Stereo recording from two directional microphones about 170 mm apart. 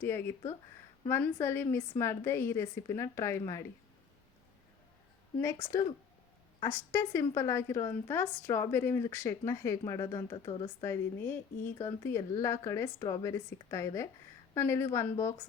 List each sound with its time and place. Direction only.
0.0 s speech: 15° left (ahead or behind)
5.4 s speech: 15° left (ahead or behind)
10.8 s speech: 15° left (ahead or behind)